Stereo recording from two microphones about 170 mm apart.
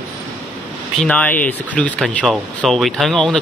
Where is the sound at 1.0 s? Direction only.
5° left (ahead or behind).